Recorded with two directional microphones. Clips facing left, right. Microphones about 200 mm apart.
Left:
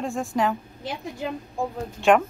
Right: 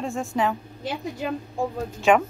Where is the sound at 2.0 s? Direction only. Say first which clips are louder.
Left 1 dB; centre (ahead or behind).